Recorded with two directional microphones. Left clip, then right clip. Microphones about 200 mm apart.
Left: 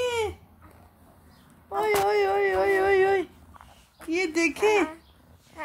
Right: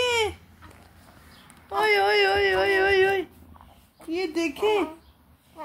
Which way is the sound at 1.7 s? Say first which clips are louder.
Right 3 dB; centre (ahead or behind).